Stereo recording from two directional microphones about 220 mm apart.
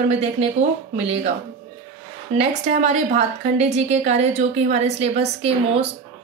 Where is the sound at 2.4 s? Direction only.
30° right (ahead or behind).